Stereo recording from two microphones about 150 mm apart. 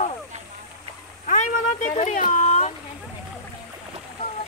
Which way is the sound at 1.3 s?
55° left (ahead or behind).